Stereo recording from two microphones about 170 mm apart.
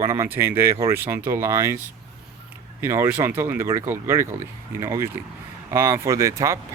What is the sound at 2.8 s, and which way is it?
Speech, 15° right (ahead or behind).